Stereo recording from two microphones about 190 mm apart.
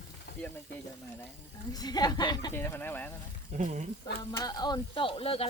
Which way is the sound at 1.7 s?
20° left (ahead or behind).